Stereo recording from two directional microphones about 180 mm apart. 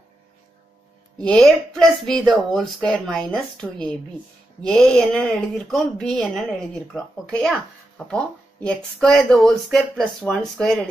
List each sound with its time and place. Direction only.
1.1 s speech: 5° left (ahead or behind)